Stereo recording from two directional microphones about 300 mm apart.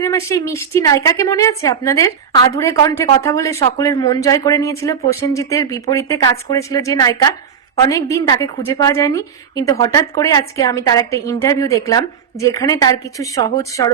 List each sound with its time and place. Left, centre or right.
0.0 s a woman's voice: centre